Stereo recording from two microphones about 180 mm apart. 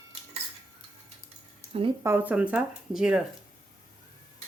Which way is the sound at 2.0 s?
10° right (ahead or behind).